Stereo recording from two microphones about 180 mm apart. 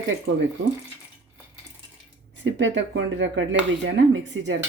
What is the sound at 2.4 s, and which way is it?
Speech, 90° right.